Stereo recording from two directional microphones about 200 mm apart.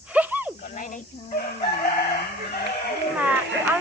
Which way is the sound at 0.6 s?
40° left (ahead or behind).